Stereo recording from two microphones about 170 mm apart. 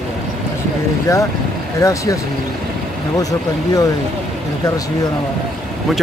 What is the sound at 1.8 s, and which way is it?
Speech, 20° left (ahead or behind).